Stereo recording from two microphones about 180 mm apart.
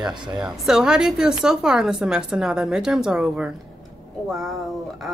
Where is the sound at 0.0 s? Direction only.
25° right (ahead or behind).